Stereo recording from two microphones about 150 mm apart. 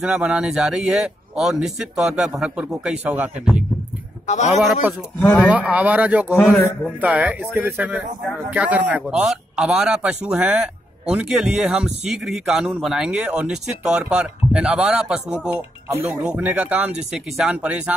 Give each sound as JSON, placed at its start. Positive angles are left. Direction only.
{"t": 0.0, "sound": "a man's voice", "side_deg": -10}
{"t": 4.3, "sound": "a man's voice", "side_deg": 50}
{"t": 5.2, "sound": "a man's voice", "side_deg": 10}
{"t": 5.5, "sound": "speech", "side_deg": -10}
{"t": 6.3, "sound": "a man's voice", "side_deg": 5}
{"t": 7.0, "sound": "a man's voice", "side_deg": -10}
{"t": 15.9, "sound": "speech", "side_deg": -20}